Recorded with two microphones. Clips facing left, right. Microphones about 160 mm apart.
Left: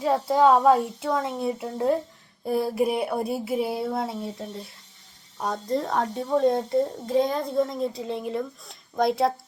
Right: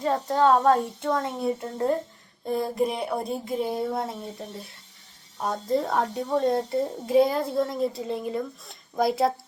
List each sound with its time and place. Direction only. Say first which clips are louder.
0.0 s a child's voice: left 2 dB; 10° left (ahead or behind)